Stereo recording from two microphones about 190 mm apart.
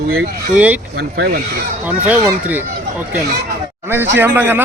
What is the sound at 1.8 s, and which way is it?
Speech, 10° right (ahead or behind).